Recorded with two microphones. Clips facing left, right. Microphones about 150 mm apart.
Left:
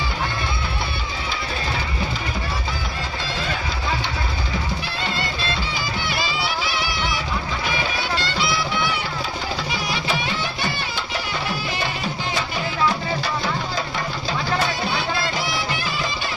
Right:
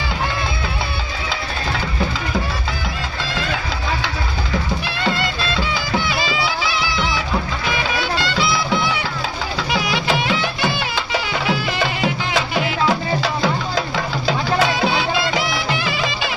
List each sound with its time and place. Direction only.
9.6 s music: 90° right
13.9 s music: 85° right